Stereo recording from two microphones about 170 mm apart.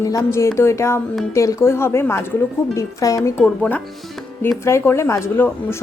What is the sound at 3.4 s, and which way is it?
Speech, 10° left (ahead or behind).